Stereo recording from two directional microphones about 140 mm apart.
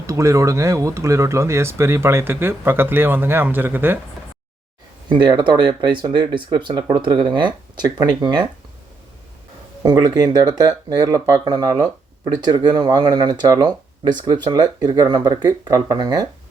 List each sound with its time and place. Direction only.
0.1 s speech: 20° right (ahead or behind)
5.0 s speech: 35° right (ahead or behind)
9.8 s speech: 30° right (ahead or behind)